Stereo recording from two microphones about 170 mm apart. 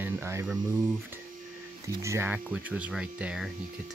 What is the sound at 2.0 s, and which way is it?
Speech, 15° right (ahead or behind).